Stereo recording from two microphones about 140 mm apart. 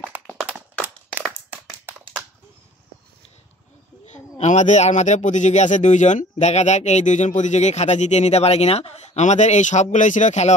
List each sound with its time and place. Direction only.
0.1 s clapping: 10° right (ahead or behind)
4.0 s speech: 55° left (ahead or behind)